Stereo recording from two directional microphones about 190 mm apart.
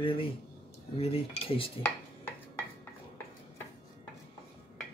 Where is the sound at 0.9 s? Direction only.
35° left (ahead or behind).